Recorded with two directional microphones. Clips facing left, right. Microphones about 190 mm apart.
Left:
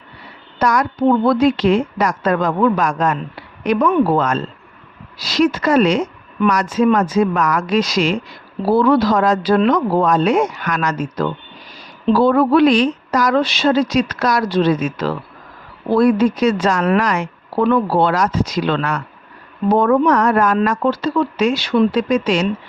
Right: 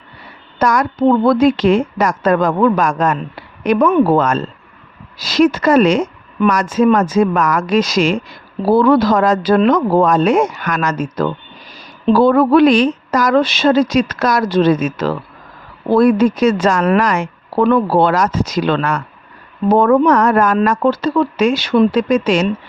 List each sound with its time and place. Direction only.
0.6 s speech: 50° right (ahead or behind)